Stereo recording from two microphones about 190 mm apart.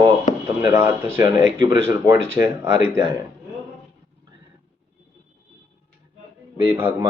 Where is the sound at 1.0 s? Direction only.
15° right (ahead or behind).